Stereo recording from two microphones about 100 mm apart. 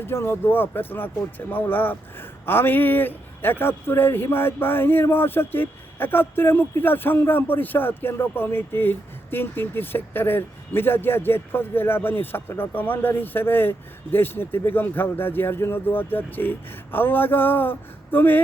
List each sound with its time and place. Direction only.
0.0 s speech: 25° left (ahead or behind)